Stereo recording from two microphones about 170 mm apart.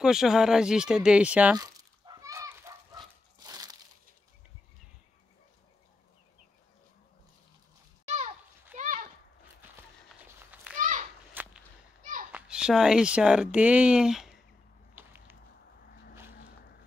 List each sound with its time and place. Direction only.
0.0 s speech: 5° right (ahead or behind)
1.6 s a sound: 20° right (ahead or behind)
8.0 s a sound: 40° right (ahead or behind)
10.0 s walk: 10° right (ahead or behind)
10.8 s children playing: 45° right (ahead or behind)
11.4 s whip: 10° right (ahead or behind)
12.0 s children playing: 50° right (ahead or behind)
12.3 s speech: 5° right (ahead or behind)
15.0 s a sound: 10° right (ahead or behind)
15.9 s vehicle: 75° left (ahead or behind)